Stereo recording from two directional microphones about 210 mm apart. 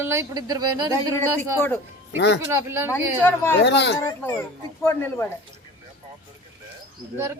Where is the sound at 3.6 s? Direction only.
55° left (ahead or behind).